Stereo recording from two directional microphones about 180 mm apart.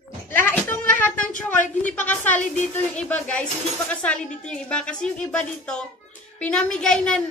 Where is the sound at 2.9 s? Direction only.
5° left (ahead or behind).